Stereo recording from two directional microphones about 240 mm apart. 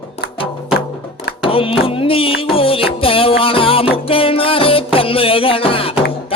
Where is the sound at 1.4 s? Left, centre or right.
Left.